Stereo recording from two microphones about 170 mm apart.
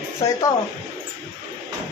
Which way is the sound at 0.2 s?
15° left (ahead or behind).